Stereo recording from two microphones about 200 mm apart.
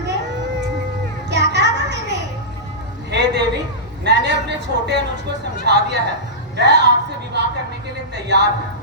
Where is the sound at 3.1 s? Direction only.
60° right (ahead or behind).